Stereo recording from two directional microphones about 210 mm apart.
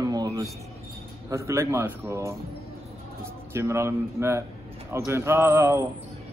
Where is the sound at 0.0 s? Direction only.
15° right (ahead or behind).